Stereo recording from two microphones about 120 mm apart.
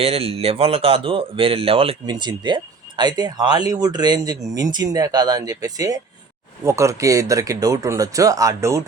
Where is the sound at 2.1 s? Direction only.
40° right (ahead or behind).